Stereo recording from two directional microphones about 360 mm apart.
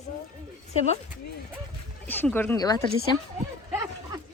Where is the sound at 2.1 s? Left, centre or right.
Centre.